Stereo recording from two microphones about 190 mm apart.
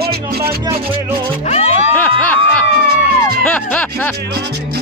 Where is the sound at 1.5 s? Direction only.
35° left (ahead or behind).